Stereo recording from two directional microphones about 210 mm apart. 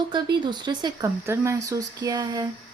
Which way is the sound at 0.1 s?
20° right (ahead or behind).